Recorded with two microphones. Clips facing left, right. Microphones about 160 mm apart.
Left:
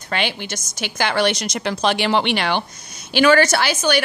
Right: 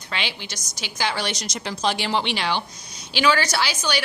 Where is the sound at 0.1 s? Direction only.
55° left (ahead or behind).